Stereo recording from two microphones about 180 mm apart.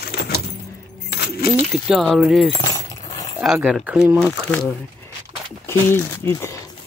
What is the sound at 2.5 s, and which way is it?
Keys jangling, 20° left (ahead or behind).